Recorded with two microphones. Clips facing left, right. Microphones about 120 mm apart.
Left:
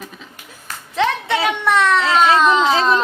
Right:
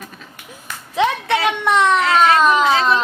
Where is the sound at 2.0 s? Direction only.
25° left (ahead or behind).